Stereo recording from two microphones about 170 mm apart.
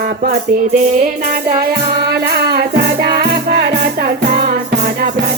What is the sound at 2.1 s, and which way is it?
Music, 70° right (ahead or behind).